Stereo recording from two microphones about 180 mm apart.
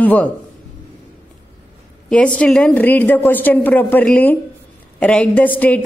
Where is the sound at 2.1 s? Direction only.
5° left (ahead or behind).